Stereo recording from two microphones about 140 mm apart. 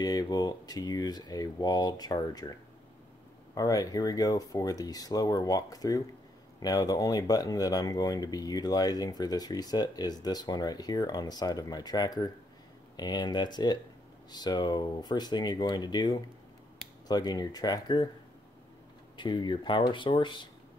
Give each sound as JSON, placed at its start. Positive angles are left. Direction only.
{"t": 0.0, "sound": "speech", "side_deg": 25}
{"t": 3.5, "sound": "speech", "side_deg": 25}
{"t": 19.1, "sound": "speech", "side_deg": 35}